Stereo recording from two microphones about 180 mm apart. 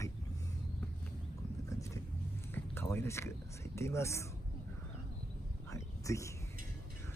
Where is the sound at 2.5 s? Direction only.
10° left (ahead or behind).